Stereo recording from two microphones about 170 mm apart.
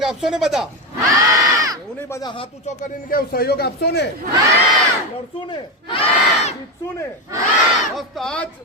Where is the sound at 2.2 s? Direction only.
30° left (ahead or behind).